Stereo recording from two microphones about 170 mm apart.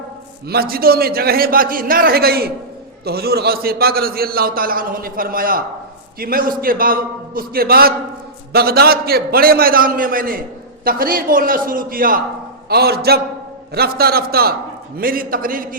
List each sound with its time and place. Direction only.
0.4 s a man's voice: 65° right (ahead or behind)
12.6 s a man's voice: 65° right (ahead or behind)